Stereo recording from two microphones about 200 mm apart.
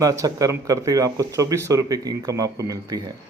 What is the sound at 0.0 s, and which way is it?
Speech, 15° right (ahead or behind).